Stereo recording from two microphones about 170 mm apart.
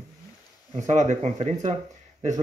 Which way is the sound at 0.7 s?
45° right (ahead or behind).